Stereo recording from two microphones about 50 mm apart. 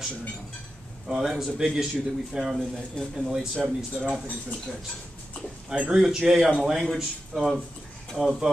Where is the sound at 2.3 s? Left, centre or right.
Centre.